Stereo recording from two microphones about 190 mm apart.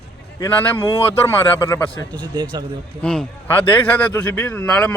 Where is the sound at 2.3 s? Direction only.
20° right (ahead or behind).